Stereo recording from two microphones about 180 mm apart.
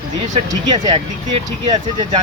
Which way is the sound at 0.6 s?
25° right (ahead or behind).